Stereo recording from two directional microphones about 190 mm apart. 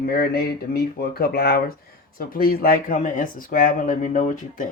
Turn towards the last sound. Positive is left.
turn(degrees=45)  # may be behind; listen again after turning